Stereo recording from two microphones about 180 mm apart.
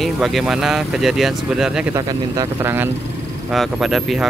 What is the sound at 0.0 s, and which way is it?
Speech, centre (ahead or behind).